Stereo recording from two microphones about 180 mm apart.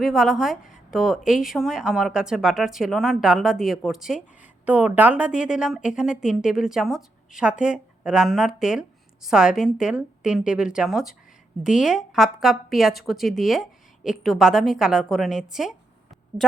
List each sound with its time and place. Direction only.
0.0 s a woman's voice: centre (ahead or behind)